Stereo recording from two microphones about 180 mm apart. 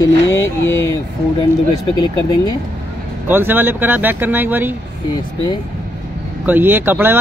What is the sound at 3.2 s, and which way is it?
Speech, 10° right (ahead or behind).